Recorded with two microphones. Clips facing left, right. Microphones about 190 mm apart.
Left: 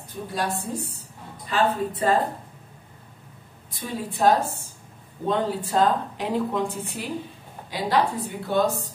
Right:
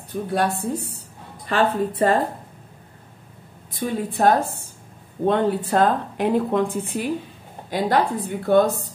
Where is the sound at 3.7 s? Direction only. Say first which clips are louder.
Right 5 dB; 55° right (ahead or behind).